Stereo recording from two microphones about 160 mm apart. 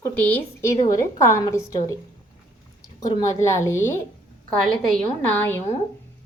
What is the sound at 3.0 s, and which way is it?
A woman's voice, 25° left (ahead or behind).